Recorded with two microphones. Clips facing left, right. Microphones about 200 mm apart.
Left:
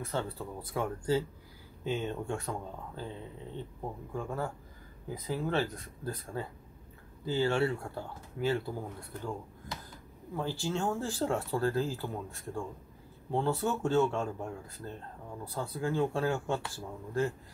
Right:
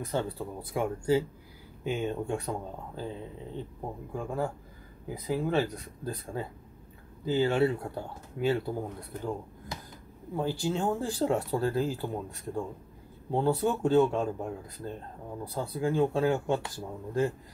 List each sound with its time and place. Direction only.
0.0 s speech: 15° right (ahead or behind)
4.1 s speech: 10° right (ahead or behind)